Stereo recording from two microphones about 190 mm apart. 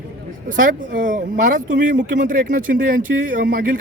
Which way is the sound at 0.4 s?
45° right (ahead or behind).